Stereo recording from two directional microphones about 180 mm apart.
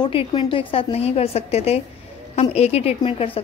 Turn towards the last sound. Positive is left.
turn(degrees=30)  # may be behind; listen again after turning